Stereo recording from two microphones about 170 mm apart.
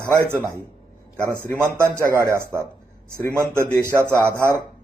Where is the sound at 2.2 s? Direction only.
15° right (ahead or behind).